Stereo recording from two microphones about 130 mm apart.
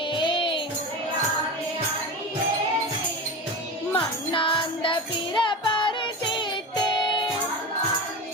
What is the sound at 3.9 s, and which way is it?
Music, 40° left (ahead or behind).